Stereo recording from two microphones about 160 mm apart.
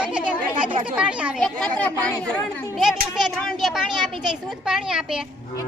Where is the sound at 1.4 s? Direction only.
5° left (ahead or behind).